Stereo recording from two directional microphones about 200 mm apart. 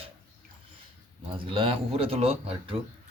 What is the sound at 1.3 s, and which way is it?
Speech, 25° right (ahead or behind).